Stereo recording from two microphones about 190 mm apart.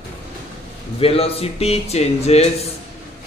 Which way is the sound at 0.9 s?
30° left (ahead or behind).